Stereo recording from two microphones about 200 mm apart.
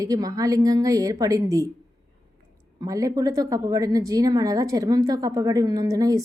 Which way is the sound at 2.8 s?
15° right (ahead or behind).